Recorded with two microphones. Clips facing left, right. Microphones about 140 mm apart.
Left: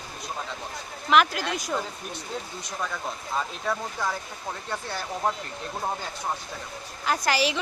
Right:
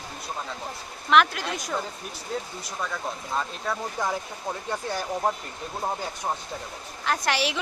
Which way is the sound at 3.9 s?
20° right (ahead or behind).